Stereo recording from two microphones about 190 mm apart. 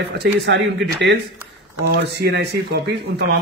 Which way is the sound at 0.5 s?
65° right (ahead or behind).